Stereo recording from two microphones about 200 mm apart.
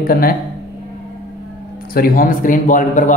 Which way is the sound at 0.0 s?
45° left (ahead or behind).